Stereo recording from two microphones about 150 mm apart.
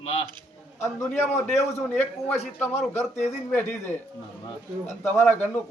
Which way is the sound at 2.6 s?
15° left (ahead or behind).